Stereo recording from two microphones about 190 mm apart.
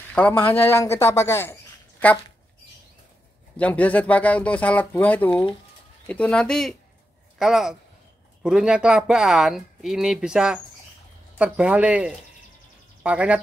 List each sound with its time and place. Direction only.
0.1 s speech: 10° left (ahead or behind)
3.5 s speech: 10° left (ahead or behind)